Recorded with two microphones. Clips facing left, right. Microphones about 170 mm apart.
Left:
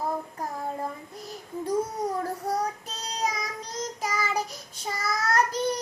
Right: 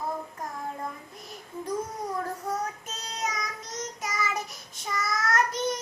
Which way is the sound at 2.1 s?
35° left (ahead or behind).